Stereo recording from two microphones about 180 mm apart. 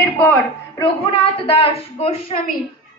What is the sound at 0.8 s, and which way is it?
Speech, 30° left (ahead or behind).